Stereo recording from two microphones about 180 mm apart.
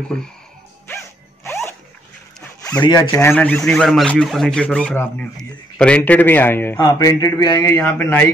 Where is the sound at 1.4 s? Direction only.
15° left (ahead or behind).